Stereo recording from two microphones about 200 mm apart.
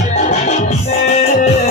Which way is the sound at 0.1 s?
35° left (ahead or behind).